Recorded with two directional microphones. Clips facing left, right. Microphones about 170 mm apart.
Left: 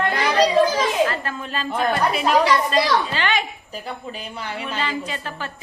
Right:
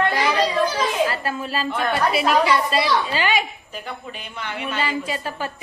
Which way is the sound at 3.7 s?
35° left (ahead or behind).